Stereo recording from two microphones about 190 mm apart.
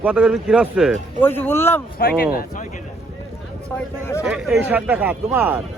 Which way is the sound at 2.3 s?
40° left (ahead or behind).